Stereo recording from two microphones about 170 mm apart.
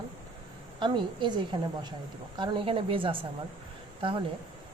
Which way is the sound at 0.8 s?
30° right (ahead or behind).